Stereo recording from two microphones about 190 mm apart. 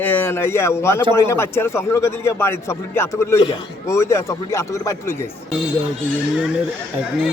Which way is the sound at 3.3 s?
30° left (ahead or behind).